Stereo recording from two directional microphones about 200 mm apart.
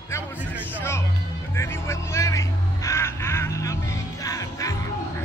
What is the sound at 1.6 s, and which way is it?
Vehicle, 15° left (ahead or behind).